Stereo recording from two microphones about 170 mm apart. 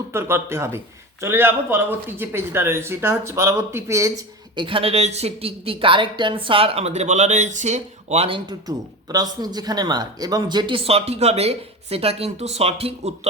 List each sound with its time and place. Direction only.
0.1 s speech: 15° right (ahead or behind)
4.5 s speech: 30° right (ahead or behind)
8.4 s speech: 20° right (ahead or behind)